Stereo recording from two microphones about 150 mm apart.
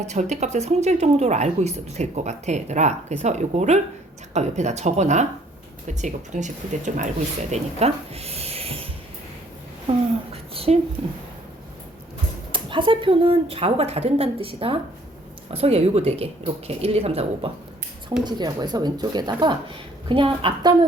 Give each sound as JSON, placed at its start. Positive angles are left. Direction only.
{"t": 0.0, "sound": "a woman's voice", "side_deg": -50}
{"t": 7.5, "sound": "speech", "side_deg": -45}
{"t": 9.9, "sound": "a woman's voice", "side_deg": -40}
{"t": 10.5, "sound": "a sound", "side_deg": -40}
{"t": 11.0, "sound": "a woman's voice", "side_deg": -45}
{"t": 12.5, "sound": "a woman's voice", "side_deg": -35}
{"t": 18.3, "sound": "a woman's voice", "side_deg": -30}